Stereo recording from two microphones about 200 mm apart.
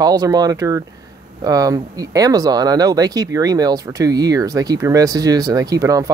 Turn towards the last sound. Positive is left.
turn(degrees=-15)  # may be behind; listen again after turning